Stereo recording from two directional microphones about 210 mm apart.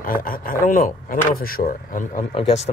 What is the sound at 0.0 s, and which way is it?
Speech, 40° left (ahead or behind).